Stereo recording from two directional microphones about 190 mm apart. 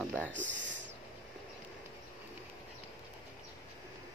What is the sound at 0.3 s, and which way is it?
Speech, 75° right (ahead or behind).